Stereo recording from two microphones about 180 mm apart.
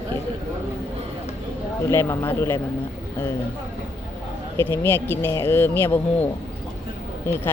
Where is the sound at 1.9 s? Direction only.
15° left (ahead or behind).